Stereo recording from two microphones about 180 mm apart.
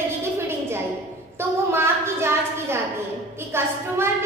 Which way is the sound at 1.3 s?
15° right (ahead or behind).